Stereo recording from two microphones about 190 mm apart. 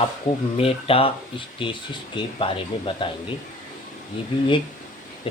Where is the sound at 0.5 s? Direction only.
30° left (ahead or behind).